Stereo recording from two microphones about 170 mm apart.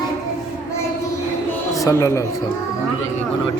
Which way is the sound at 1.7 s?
20° left (ahead or behind).